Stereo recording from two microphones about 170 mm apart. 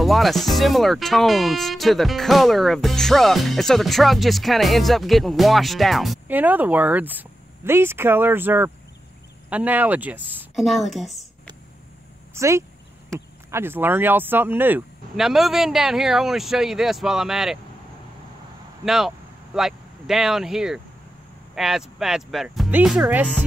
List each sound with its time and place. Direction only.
0.0 s speech: centre (ahead or behind)
6.2 s speech: 10° right (ahead or behind)
12.4 s speech: 15° right (ahead or behind)
18.9 s speech: centre (ahead or behind)